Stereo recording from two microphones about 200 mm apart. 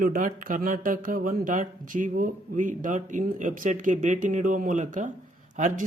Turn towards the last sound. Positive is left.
turn(degrees=-40)  # may be behind; listen again after turning